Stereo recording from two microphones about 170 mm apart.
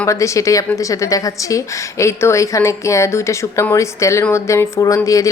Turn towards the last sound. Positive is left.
turn(degrees=20)  # may be behind; listen again after turning